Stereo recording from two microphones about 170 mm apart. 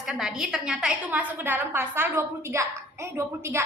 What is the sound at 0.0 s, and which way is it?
A woman's voice, 5° right (ahead or behind).